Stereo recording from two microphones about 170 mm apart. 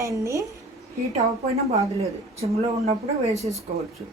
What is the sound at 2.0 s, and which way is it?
A woman's voice, 35° right (ahead or behind).